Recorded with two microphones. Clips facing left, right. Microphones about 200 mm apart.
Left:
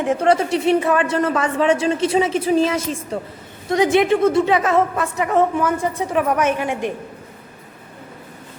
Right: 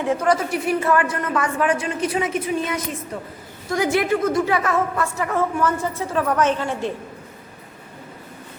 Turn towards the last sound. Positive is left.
turn(degrees=15)  # may be behind; listen again after turning